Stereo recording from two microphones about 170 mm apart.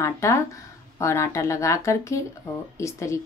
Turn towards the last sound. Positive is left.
turn(degrees=15)  # may be behind; listen again after turning